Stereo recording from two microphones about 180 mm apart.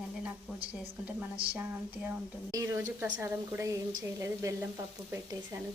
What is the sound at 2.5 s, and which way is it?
A woman's voice, 15° right (ahead or behind).